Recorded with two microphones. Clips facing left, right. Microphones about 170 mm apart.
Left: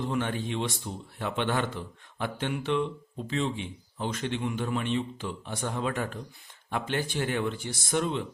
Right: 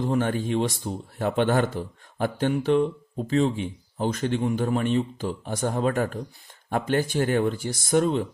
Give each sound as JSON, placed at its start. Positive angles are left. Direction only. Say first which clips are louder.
{"t": 0.0, "sound": "speech", "louder": "right 6 dB", "side_deg": -40}